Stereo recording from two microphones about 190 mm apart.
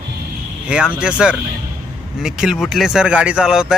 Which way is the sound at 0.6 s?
5° right (ahead or behind).